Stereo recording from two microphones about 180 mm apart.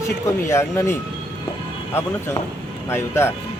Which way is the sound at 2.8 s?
15° left (ahead or behind).